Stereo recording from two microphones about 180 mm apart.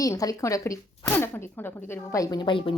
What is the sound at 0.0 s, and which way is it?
Speech, 20° left (ahead or behind).